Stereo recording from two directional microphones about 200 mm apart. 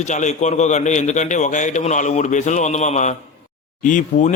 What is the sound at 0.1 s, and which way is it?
A man's voice, 35° left (ahead or behind).